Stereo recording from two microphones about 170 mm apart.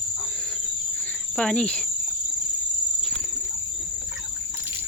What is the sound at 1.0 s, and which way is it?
Cricket, 5° left (ahead or behind).